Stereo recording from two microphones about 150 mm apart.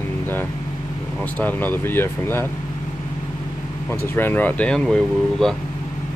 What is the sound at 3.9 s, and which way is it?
Speech, 15° left (ahead or behind).